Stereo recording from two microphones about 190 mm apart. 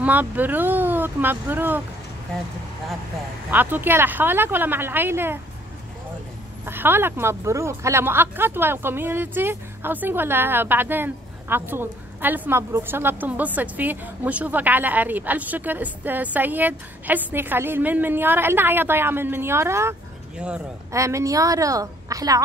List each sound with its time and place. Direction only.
0.0 s speech: 10° right (ahead or behind)
3.4 s speech: 10° right (ahead or behind)
6.6 s speech: 10° right (ahead or behind)